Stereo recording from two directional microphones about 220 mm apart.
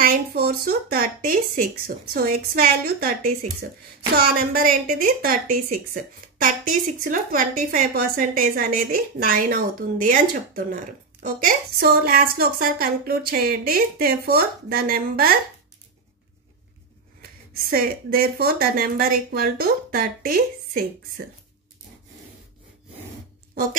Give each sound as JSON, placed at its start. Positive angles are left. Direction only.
{"t": 0.0, "sound": "speech", "side_deg": -45}
{"t": 17.2, "sound": "speech", "side_deg": -40}